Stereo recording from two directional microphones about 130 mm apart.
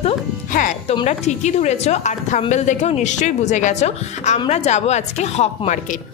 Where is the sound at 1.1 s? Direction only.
60° left (ahead or behind).